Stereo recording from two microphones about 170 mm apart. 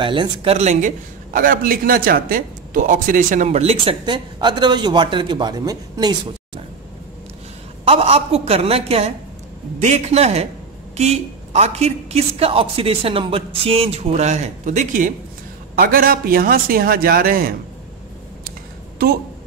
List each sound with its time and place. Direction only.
0.0 s a man's voice: 30° right (ahead or behind)
7.8 s a man's voice: 35° right (ahead or behind); by 17.6 s 60° right (ahead or behind)